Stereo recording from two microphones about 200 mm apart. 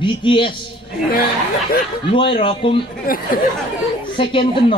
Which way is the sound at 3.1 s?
45° left (ahead or behind).